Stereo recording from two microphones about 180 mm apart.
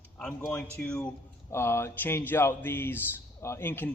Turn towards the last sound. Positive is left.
turn(degrees=10)  # may be behind; listen again after turning